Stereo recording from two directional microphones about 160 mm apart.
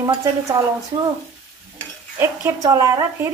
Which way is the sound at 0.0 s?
20° right (ahead or behind).